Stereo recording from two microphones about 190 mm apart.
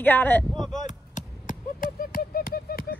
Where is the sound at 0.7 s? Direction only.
40° left (ahead or behind).